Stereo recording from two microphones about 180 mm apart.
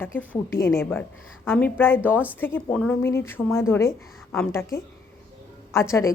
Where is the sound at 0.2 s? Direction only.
15° left (ahead or behind).